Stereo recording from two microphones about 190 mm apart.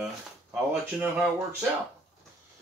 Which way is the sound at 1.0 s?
5° right (ahead or behind).